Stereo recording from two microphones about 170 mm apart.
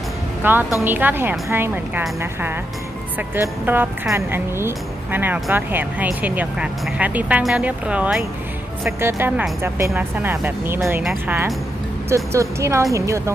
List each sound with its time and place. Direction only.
0.4 s speech: 10° right (ahead or behind)
11.0 s speech: centre (ahead or behind)
12.0 s speech: 15° right (ahead or behind)